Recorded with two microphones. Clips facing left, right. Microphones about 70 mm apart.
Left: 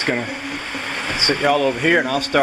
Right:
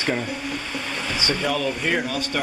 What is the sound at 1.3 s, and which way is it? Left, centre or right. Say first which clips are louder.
Speech: left 8 dB; left.